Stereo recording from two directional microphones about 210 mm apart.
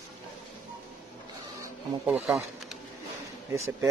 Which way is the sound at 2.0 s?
5° right (ahead or behind).